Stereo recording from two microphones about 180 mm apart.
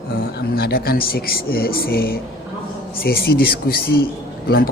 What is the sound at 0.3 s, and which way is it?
Speech, 60° left (ahead or behind).